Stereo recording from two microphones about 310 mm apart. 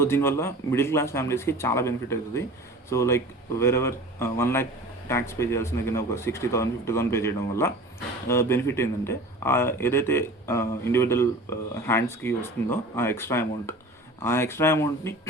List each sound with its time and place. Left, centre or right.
0.0 s speech: centre